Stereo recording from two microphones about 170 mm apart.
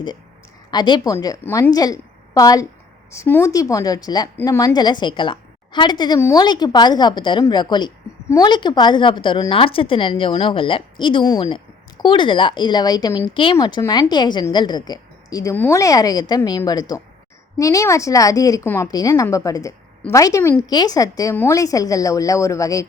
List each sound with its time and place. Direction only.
0.7 s a woman's voice: 25° left (ahead or behind)